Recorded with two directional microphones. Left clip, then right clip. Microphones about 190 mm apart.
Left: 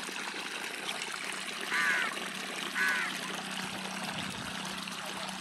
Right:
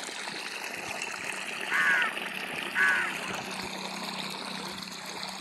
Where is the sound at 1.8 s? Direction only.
15° left (ahead or behind).